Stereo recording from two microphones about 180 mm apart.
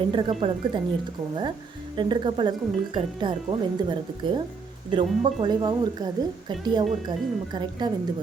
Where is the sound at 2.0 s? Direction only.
25° right (ahead or behind).